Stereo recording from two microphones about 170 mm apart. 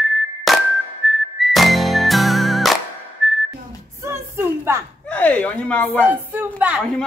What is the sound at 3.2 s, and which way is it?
Whistling, centre (ahead or behind).